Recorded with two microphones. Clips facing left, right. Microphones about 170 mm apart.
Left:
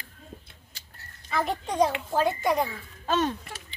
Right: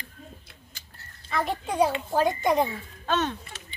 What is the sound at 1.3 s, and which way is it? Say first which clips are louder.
A child's voice: even; centre (ahead or behind).